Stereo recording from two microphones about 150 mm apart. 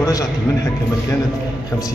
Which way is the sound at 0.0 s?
20° left (ahead or behind).